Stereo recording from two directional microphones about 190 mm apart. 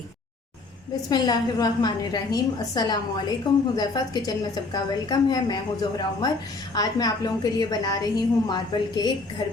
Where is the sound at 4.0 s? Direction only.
20° left (ahead or behind).